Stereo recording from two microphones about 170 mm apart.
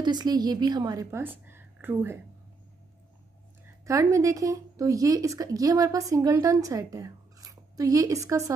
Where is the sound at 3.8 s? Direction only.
15° right (ahead or behind).